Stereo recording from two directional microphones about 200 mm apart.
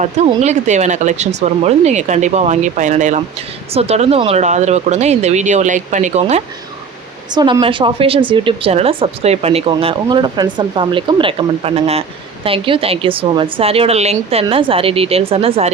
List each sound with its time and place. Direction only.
0.0 s speech: 35° right (ahead or behind)
7.3 s a woman's voice: 20° right (ahead or behind)